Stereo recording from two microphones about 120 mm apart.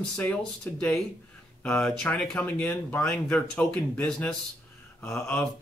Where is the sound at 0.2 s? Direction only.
10° left (ahead or behind).